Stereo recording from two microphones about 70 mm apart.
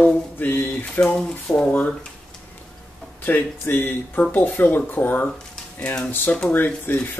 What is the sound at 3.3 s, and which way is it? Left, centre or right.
Speech, left.